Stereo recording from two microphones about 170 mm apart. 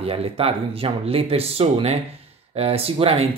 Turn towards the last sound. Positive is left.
turn(degrees=-35)  # may be behind; listen again after turning